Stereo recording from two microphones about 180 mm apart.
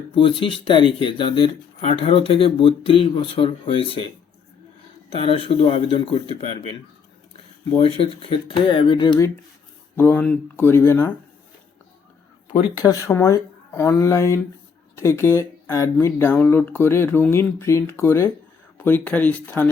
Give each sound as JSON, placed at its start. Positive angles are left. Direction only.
{"t": 0.1, "sound": "speech", "side_deg": 30}
{"t": 5.0, "sound": "speech", "side_deg": 30}
{"t": 7.8, "sound": "speech", "side_deg": 30}
{"t": 12.8, "sound": "speech", "side_deg": 20}